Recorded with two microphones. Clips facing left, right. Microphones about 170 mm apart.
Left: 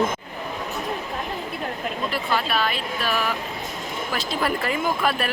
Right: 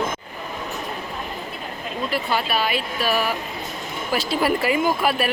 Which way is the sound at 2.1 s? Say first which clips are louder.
Right 3 dB; 5° right (ahead or behind).